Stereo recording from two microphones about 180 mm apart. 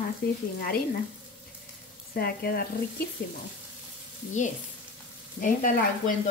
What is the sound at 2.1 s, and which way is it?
Speech, 60° left (ahead or behind).